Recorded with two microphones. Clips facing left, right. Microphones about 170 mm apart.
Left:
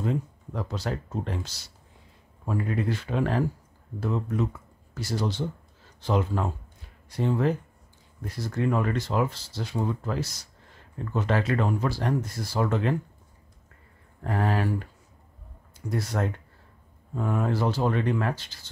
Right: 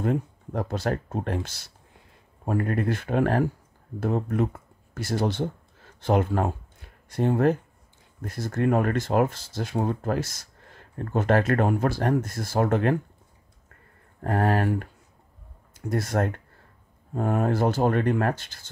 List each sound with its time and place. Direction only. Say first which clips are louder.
0.0 s speech: right 3 dB; 55° right (ahead or behind)
14.2 s speech: right 3 dB; 50° right (ahead or behind)
15.9 s speech: right 3 dB; 50° right (ahead or behind)